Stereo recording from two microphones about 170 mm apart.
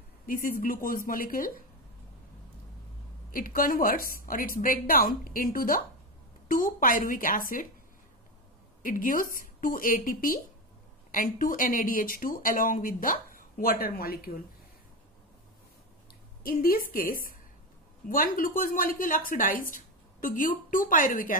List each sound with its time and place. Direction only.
0.3 s speech: 55° left (ahead or behind)
3.3 s speech: 55° left (ahead or behind)
8.8 s speech: 55° left (ahead or behind)
16.4 s a woman's voice: 60° left (ahead or behind)